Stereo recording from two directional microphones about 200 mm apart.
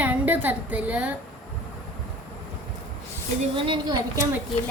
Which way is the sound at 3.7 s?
20° right (ahead or behind).